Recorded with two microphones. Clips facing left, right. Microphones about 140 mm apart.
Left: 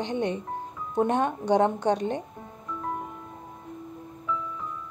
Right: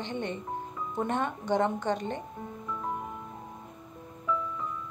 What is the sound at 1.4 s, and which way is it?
Speech, 70° left (ahead or behind).